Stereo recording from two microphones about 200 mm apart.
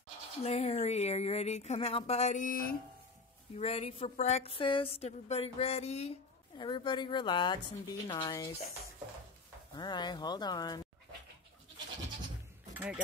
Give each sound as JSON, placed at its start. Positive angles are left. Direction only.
{"t": 0.4, "sound": "a woman's voice", "side_deg": 30}
{"t": 3.5, "sound": "speech", "side_deg": 30}
{"t": 9.8, "sound": "speech", "side_deg": 20}
{"t": 12.7, "sound": "speech", "side_deg": -10}